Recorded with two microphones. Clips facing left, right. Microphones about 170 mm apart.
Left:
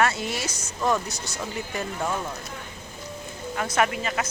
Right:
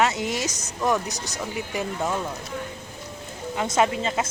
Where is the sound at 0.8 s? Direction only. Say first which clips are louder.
Right 1 dB; 15° right (ahead or behind).